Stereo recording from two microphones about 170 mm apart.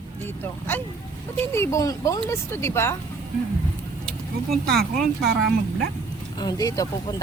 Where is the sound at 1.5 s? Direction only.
15° left (ahead or behind).